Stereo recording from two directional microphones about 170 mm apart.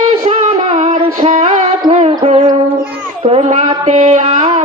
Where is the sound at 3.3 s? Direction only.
40° right (ahead or behind).